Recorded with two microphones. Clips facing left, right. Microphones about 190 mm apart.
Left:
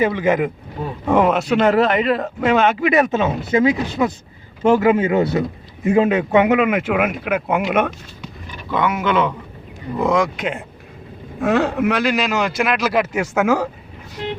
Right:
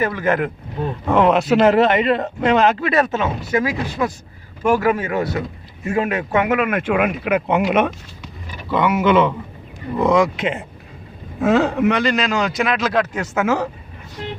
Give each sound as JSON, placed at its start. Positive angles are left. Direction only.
{"t": 0.0, "sound": "a man's voice", "side_deg": 15}
{"t": 2.8, "sound": "a man's voice", "side_deg": 15}